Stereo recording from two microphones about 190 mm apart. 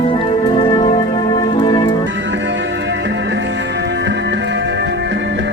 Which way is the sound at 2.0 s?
70° right (ahead or behind).